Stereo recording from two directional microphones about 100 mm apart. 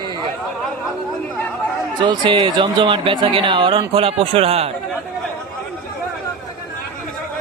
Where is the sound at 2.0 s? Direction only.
50° right (ahead or behind); by 4.7 s 85° right.